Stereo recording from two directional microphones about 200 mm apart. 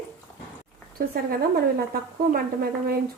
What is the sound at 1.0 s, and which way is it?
A woman's voice, 50° right (ahead or behind).